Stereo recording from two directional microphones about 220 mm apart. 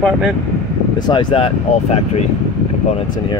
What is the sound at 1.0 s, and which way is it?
Speech, 25° left (ahead or behind).